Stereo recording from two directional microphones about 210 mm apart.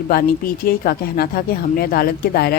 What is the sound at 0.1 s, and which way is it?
Speech, 45° left (ahead or behind).